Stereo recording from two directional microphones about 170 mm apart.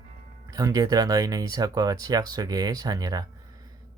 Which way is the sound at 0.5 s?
20° right (ahead or behind).